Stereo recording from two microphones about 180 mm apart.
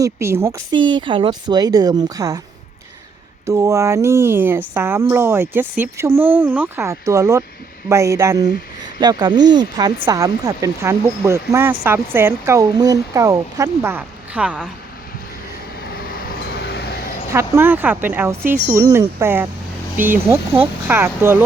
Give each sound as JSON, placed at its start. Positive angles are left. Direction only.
{"t": 0.0, "sound": "speech", "side_deg": -15}
{"t": 0.8, "sound": "a woman's voice", "side_deg": -25}
{"t": 3.4, "sound": "a woman's voice", "side_deg": -15}
{"t": 15.8, "sound": "vehicle", "side_deg": 60}
{"t": 17.3, "sound": "speech", "side_deg": -15}